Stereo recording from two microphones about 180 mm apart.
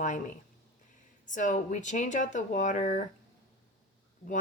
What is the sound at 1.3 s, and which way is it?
Speech, 45° left (ahead or behind).